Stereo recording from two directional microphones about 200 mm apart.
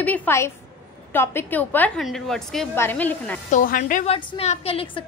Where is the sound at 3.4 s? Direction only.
40° left (ahead or behind).